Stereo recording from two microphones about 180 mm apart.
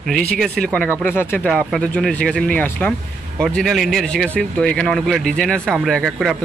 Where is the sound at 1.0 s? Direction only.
10° left (ahead or behind).